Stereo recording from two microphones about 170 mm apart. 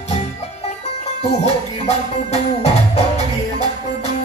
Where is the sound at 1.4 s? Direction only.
40° left (ahead or behind).